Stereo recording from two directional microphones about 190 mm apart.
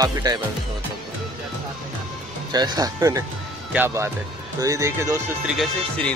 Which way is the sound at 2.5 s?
20° right (ahead or behind).